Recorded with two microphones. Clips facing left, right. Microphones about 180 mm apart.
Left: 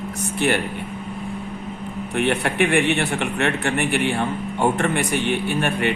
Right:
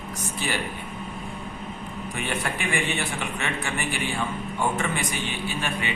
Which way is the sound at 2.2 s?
65° left (ahead or behind).